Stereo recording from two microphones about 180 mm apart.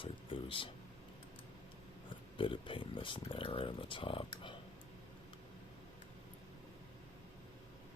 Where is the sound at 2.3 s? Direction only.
30° left (ahead or behind).